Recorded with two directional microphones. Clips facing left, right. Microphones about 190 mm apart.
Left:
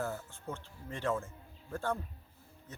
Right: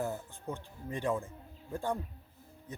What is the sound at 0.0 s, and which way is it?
Speech, 15° right (ahead or behind).